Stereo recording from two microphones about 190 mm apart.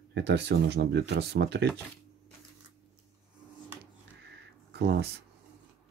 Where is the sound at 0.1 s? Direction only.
65° right (ahead or behind).